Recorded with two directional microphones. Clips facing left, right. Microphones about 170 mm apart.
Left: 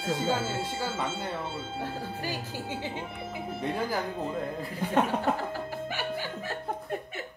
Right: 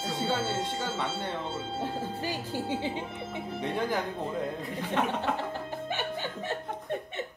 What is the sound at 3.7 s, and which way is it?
Speech, 5° left (ahead or behind).